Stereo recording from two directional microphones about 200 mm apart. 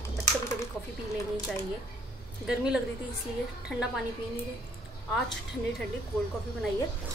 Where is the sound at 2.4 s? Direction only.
5° right (ahead or behind).